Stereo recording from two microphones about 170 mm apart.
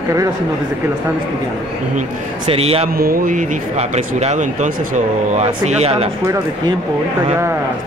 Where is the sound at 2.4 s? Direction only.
35° right (ahead or behind).